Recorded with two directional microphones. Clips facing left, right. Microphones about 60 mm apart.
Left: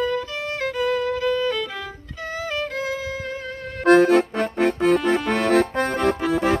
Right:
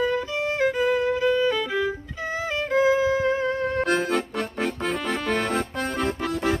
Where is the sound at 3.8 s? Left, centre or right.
Left.